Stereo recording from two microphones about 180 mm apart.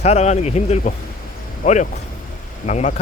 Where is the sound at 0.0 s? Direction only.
40° left (ahead or behind).